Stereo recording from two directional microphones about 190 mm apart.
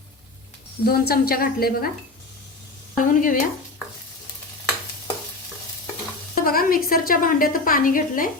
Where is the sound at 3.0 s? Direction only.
45° left (ahead or behind).